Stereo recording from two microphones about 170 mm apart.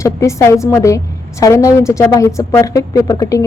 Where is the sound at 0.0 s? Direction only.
20° left (ahead or behind).